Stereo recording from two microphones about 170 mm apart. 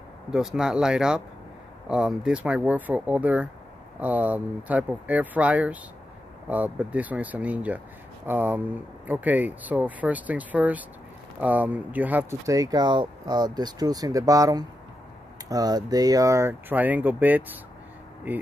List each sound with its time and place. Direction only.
0.3 s speech: 5° right (ahead or behind)